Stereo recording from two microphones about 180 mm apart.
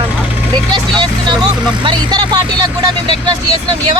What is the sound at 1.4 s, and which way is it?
Speech, 25° right (ahead or behind).